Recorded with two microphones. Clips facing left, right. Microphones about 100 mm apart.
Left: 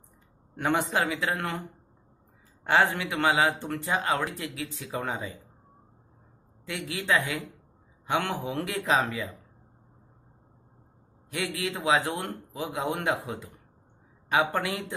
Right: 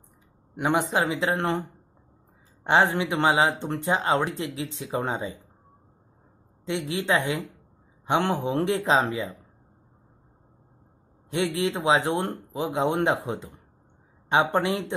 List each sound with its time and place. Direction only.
0.6 s speech: 15° right (ahead or behind)
6.6 s speech: 25° right (ahead or behind)
11.2 s speech: 25° right (ahead or behind)